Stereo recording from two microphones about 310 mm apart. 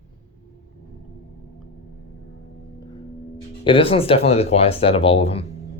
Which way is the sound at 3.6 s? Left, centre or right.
Centre.